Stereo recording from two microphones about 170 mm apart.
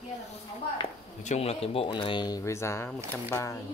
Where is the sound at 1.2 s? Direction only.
35° left (ahead or behind); by 3.6 s 20° left (ahead or behind).